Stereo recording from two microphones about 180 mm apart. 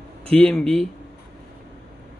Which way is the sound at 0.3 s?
5° left (ahead or behind).